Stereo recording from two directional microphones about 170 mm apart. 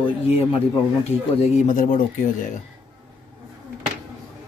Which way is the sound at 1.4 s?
45° left (ahead or behind).